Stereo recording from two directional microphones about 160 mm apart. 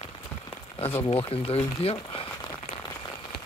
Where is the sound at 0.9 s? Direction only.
15° left (ahead or behind).